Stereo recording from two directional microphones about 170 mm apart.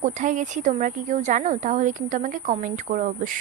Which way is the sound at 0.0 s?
45° right (ahead or behind).